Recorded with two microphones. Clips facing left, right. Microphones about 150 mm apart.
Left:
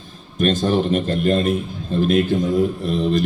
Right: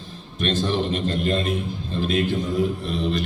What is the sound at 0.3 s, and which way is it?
A man's voice, 45° left (ahead or behind).